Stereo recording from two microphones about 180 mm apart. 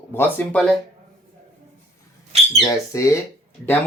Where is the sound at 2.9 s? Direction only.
15° left (ahead or behind).